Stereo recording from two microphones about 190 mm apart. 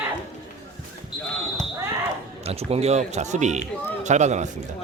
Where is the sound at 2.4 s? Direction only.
30° right (ahead or behind).